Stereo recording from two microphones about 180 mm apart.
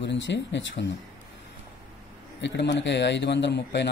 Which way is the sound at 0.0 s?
80° left.